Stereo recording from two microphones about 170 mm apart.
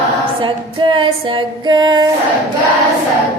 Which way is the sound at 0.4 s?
30° right (ahead or behind).